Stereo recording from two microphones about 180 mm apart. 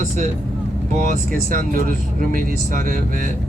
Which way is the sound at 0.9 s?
45° right (ahead or behind).